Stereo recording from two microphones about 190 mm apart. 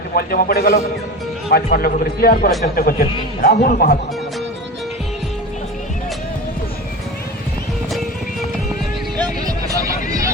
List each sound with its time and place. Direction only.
0.2 s a man's voice: 50° left (ahead or behind)
9.5 s music: 20° right (ahead or behind)